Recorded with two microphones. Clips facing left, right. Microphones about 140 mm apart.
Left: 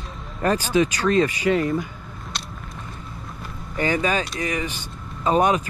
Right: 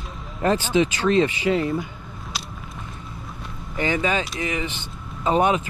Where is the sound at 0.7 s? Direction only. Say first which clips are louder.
Even; 20° right (ahead or behind).